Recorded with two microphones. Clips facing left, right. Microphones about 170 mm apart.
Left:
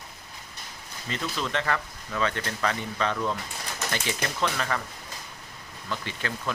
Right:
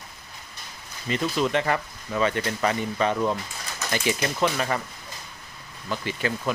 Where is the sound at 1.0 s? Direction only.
15° right (ahead or behind).